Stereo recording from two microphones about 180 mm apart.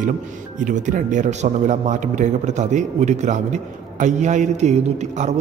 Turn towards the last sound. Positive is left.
turn(degrees=-40)  # may be behind; listen again after turning